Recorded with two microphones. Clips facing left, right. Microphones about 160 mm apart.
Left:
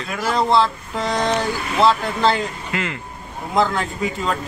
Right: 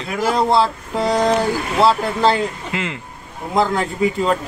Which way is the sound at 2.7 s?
20° right (ahead or behind).